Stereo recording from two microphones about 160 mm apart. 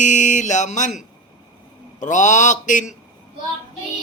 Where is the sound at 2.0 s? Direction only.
50° left (ahead or behind).